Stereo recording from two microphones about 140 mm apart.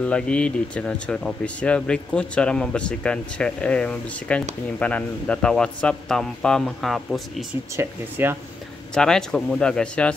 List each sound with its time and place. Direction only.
0.0 s a man's voice: 10° left (ahead or behind)
7.7 s speech: 15° right (ahead or behind)
8.9 s a man's voice: 5° left (ahead or behind)